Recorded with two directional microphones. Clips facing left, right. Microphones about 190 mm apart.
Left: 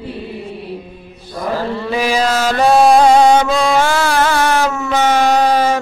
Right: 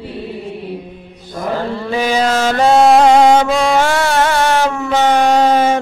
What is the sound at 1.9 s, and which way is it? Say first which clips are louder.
Mantra: right 1 dB; 25° right (ahead or behind).